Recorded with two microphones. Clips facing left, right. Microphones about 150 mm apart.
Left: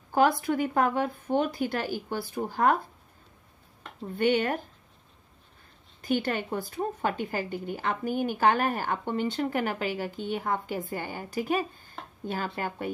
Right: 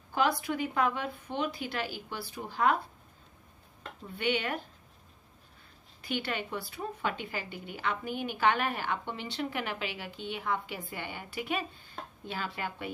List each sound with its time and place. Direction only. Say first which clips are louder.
0.1 s a woman's voice: left 6 dB; 45° left (ahead or behind)
4.1 s a woman's voice: left 7 dB; 45° left (ahead or behind)
6.0 s a woman's voice: left 7 dB; 45° left (ahead or behind)